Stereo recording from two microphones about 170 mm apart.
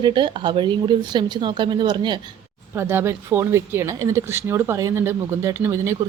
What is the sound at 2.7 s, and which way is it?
Speech, 15° right (ahead or behind).